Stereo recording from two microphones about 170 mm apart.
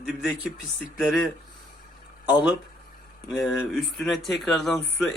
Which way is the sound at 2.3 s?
5° right (ahead or behind).